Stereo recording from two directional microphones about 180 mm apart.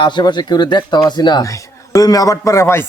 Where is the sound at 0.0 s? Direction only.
25° left (ahead or behind).